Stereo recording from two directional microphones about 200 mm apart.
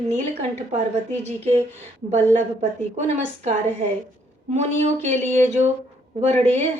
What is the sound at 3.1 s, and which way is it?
A woman's voice, 35° right (ahead or behind).